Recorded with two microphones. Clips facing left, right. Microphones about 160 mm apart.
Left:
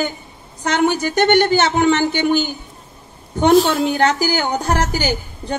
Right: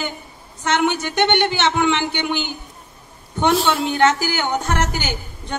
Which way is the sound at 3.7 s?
40° left (ahead or behind).